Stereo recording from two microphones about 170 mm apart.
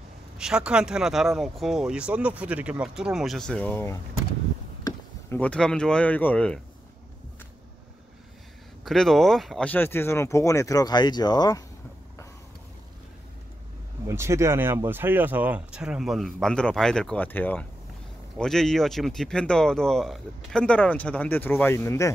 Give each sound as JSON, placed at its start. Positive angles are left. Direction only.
{"t": 0.4, "sound": "speech", "side_deg": -5}
{"t": 8.8, "sound": "speech", "side_deg": 0}
{"t": 14.0, "sound": "speech", "side_deg": -15}